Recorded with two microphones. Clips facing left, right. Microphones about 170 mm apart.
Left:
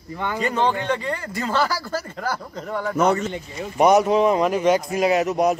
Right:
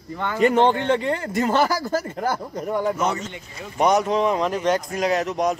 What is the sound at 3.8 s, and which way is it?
Speech, 5° left (ahead or behind).